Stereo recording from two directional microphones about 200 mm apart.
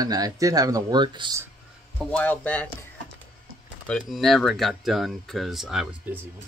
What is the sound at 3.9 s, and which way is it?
Speech, 5° left (ahead or behind).